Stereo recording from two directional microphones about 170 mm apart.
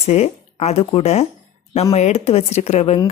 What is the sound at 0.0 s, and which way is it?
Speech, 40° left (ahead or behind).